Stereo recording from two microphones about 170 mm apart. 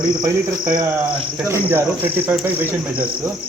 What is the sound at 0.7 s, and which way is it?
Cricket, 25° right (ahead or behind).